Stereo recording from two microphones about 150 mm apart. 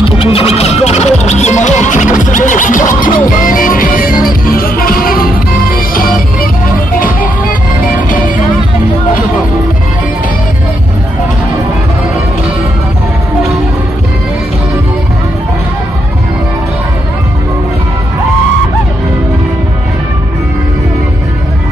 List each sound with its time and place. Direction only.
0.2 s music: 40° left (ahead or behind); by 6.5 s 75° left (ahead or behind)